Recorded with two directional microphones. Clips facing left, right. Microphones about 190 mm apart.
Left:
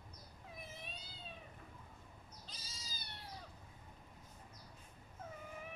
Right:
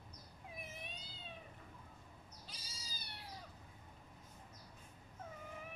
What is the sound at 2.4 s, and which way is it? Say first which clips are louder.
Cat: even; 10° right (ahead or behind).